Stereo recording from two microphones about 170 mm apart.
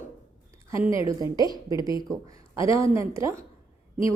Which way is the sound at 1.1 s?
20° right (ahead or behind).